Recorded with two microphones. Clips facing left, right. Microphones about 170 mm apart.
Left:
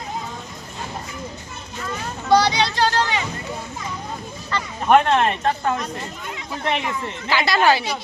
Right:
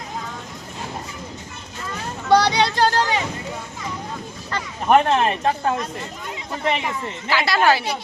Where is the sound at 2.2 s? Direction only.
65° right (ahead or behind).